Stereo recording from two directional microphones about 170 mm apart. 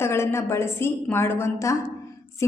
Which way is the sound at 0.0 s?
15° left (ahead or behind).